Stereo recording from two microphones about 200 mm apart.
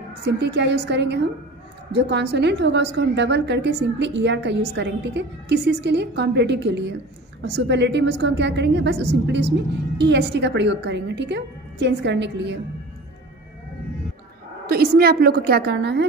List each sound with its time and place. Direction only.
0.2 s a woman's voice: 60° right (ahead or behind)
14.7 s a woman's voice: 50° right (ahead or behind)